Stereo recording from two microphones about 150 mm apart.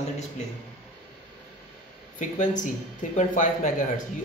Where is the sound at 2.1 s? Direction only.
55° left (ahead or behind).